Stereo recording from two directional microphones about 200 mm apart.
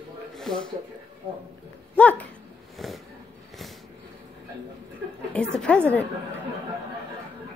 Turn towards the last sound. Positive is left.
turn(degrees=5)  # may be behind; listen again after turning